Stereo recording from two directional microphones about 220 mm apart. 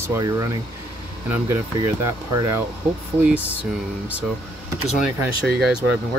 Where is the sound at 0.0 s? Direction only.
15° right (ahead or behind).